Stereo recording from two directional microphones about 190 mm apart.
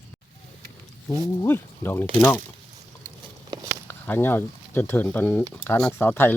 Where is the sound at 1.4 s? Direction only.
10° left (ahead or behind).